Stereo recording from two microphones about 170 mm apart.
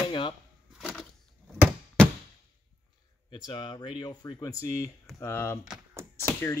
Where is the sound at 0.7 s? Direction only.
Centre (ahead or behind).